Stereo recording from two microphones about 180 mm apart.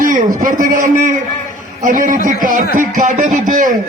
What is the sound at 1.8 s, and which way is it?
A man's voice, 45° right (ahead or behind).